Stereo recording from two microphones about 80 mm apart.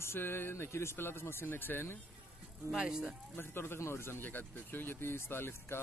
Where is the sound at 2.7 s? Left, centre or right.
Centre.